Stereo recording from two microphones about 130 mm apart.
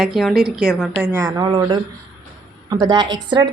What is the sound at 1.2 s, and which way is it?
Speech, 30° right (ahead or behind).